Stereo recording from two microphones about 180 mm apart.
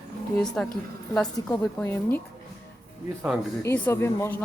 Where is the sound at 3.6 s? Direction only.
10° left (ahead or behind).